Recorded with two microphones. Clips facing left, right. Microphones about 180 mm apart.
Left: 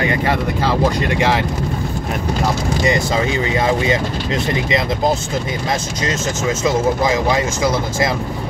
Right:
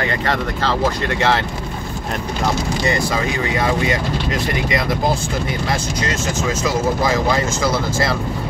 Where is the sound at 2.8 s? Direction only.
20° left (ahead or behind).